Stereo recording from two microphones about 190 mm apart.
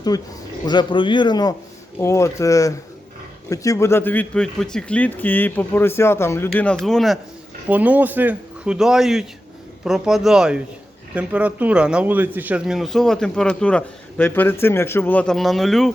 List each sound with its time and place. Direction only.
0.1 s a man's voice: 20° left (ahead or behind); by 15.9 s centre (ahead or behind)